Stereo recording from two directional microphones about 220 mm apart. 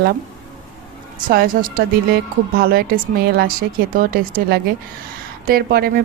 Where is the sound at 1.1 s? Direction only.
40° right (ahead or behind).